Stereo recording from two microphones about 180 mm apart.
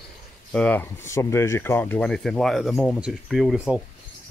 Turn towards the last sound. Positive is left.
turn(degrees=0)  # may be behind; listen again after turning